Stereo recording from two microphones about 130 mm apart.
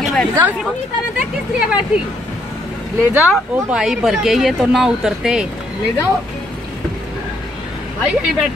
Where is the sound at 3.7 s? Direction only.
5° right (ahead or behind).